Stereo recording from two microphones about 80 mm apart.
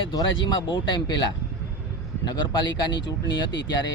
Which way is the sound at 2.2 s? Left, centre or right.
Left.